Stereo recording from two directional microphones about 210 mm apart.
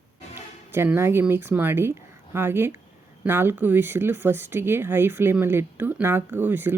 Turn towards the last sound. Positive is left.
turn(degrees=-10)  # may be behind; listen again after turning